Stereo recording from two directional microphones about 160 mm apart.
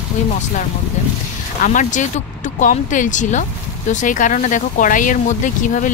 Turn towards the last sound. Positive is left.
turn(degrees=55)  # may be behind; listen again after turning